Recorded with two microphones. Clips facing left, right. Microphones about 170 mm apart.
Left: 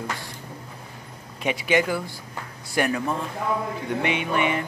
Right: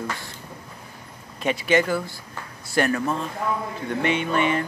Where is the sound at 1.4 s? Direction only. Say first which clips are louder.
Right 1 dB; 15° left (ahead or behind).